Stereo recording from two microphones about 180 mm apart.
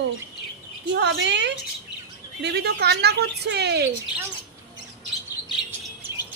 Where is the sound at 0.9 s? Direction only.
80° right.